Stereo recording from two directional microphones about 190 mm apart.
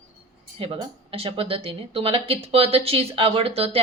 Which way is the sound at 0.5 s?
25° right (ahead or behind).